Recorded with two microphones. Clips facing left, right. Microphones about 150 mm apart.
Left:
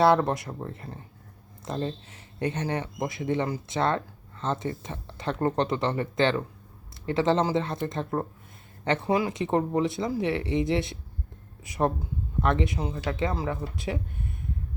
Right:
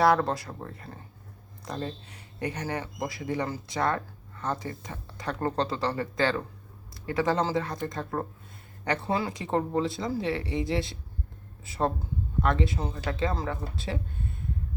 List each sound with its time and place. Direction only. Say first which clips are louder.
0.0 s speech: left 2 dB; 20° left (ahead or behind)